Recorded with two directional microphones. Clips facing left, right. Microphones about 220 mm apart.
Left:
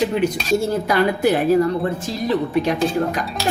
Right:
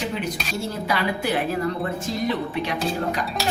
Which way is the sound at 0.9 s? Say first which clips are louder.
Left 7 dB; 50° left (ahead or behind).